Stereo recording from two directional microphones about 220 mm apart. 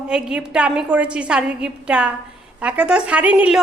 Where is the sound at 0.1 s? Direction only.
5° right (ahead or behind).